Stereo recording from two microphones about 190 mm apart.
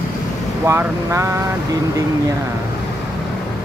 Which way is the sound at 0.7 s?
15° right (ahead or behind).